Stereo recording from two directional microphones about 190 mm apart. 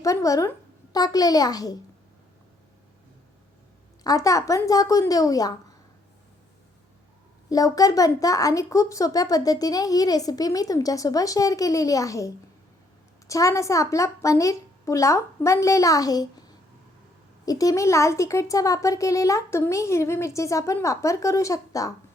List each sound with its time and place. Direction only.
0.0 s a woman's voice: 15° left (ahead or behind)
4.0 s speech: 20° left (ahead or behind)
7.5 s a woman's voice: 20° left (ahead or behind)
17.4 s speech: 20° left (ahead or behind)